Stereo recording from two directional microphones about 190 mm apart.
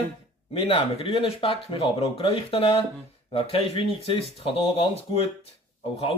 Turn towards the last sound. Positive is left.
turn(degrees=30)  # may be behind; listen again after turning